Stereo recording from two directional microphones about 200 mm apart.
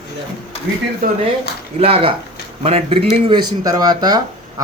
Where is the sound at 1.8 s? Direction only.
30° right (ahead or behind).